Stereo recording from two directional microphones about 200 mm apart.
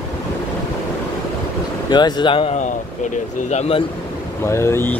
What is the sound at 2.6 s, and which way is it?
Speech, 40° left (ahead or behind).